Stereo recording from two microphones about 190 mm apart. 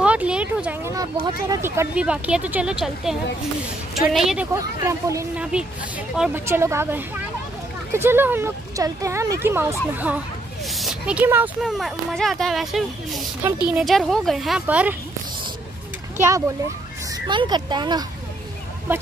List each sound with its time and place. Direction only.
0.0 s a sound: 5° right (ahead or behind)
1.5 s speech: 15° right (ahead or behind)
4.6 s speech: 15° right (ahead or behind)
5.4 s speech: 5° right (ahead or behind)
17.3 s speech: 25° right (ahead or behind)
18.9 s speech: 10° right (ahead or behind)